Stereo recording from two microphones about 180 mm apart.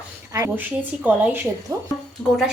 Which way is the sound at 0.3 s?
15° right (ahead or behind).